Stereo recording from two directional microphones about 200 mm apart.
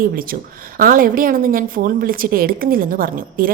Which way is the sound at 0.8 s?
45° right (ahead or behind).